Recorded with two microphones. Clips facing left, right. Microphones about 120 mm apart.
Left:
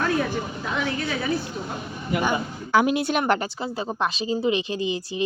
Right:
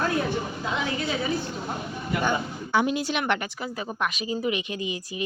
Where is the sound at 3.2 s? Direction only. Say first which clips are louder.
Left 4 dB; 35° left (ahead or behind).